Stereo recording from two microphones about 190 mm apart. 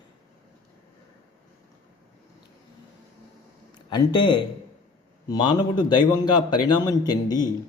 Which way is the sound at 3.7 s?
25° left (ahead or behind).